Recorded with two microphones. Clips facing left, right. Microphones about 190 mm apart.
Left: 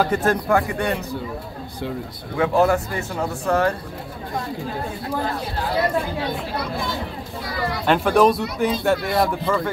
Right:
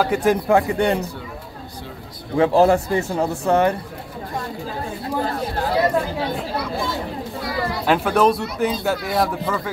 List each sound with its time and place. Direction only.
0.0 s speech: 10° right (ahead or behind)
2.3 s speech: 30° right (ahead or behind)
7.8 s speech: 5° right (ahead or behind)